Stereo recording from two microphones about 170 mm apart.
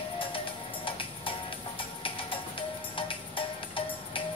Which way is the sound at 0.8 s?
30° left (ahead or behind).